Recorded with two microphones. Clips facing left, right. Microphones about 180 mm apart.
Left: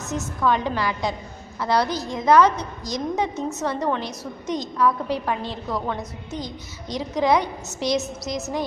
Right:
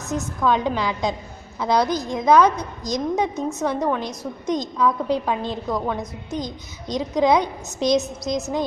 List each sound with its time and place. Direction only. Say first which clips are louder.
0.1 s a woman's voice: right 2 dB; 15° right (ahead or behind)